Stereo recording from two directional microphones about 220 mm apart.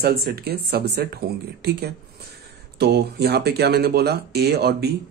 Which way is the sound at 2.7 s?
50° right (ahead or behind).